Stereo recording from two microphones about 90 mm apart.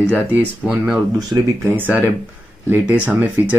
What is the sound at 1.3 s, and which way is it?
Speech, 35° right (ahead or behind).